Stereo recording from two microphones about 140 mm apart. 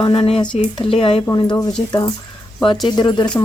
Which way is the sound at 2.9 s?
30° left (ahead or behind).